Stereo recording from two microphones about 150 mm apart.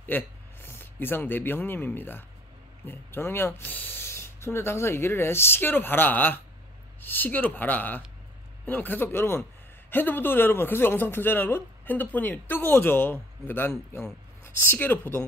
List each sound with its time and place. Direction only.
0.0 s speech: 15° left (ahead or behind)